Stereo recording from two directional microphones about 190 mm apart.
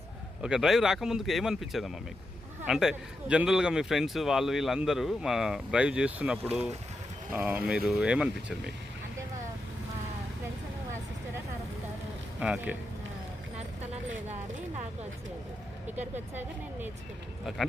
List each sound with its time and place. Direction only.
0.4 s a man's voice: 5° right (ahead or behind)
12.4 s speech: 5° right (ahead or behind)
13.6 s a sound: 35° right (ahead or behind)
16.3 s speech: 10° right (ahead or behind)